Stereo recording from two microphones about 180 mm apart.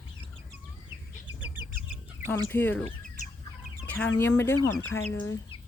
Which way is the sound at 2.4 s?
10° left (ahead or behind).